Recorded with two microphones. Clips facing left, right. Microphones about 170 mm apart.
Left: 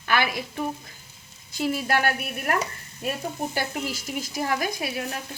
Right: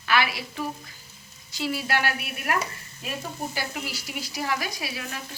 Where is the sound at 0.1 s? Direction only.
45° left (ahead or behind).